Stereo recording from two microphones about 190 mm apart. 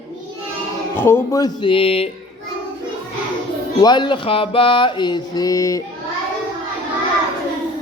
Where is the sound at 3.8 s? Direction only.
25° left (ahead or behind).